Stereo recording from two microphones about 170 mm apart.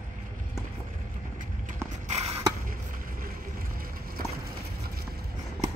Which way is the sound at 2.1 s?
40° right (ahead or behind).